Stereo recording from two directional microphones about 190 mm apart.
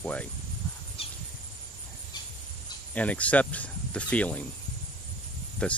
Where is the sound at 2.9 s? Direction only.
5° left (ahead or behind).